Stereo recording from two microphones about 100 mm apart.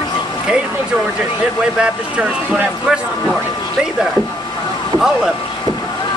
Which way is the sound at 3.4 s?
40° left (ahead or behind).